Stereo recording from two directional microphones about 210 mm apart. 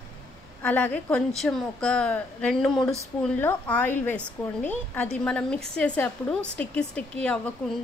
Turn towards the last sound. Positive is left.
turn(degrees=5)  # may be behind; listen again after turning